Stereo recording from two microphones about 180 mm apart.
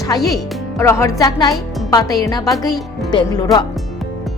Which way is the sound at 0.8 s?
15° left (ahead or behind).